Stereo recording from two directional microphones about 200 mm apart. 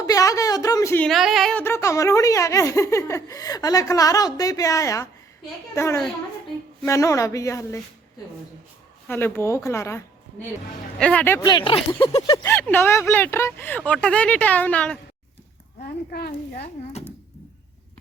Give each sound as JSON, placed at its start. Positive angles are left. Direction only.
{"t": 0.0, "sound": "a sound", "side_deg": 15}
{"t": 1.0, "sound": "a woman's voice", "side_deg": 0}
{"t": 9.0, "sound": "a woman's voice", "side_deg": 10}
{"t": 11.0, "sound": "speech", "side_deg": 5}
{"t": 12.4, "sound": "a woman's voice", "side_deg": 10}
{"t": 16.1, "sound": "a woman's voice", "side_deg": 50}
{"t": 16.9, "sound": "a sound", "side_deg": 30}